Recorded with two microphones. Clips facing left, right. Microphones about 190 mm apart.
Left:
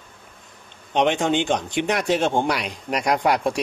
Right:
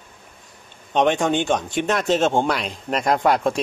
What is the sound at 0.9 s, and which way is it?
Speech, 15° left (ahead or behind).